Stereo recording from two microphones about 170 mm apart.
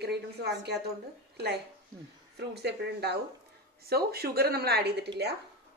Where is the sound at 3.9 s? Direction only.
65° right (ahead or behind).